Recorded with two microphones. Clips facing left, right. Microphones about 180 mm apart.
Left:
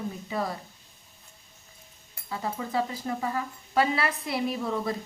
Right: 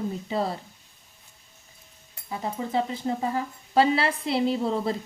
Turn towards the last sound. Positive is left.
turn(degrees=-30)  # may be behind; listen again after turning